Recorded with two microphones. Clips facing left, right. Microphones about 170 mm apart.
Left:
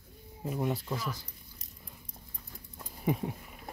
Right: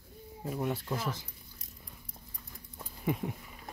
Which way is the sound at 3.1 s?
30° left (ahead or behind).